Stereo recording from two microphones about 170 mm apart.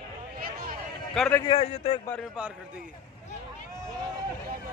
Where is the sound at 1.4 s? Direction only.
35° left (ahead or behind).